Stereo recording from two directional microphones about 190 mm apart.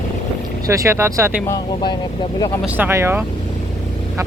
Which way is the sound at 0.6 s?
15° right (ahead or behind).